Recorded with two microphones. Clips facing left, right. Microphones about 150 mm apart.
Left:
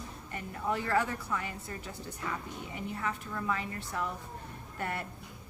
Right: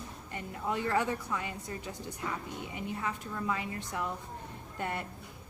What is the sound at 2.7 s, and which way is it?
A woman's voice, 20° right (ahead or behind).